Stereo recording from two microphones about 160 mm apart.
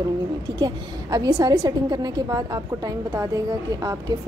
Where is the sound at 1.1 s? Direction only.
25° right (ahead or behind).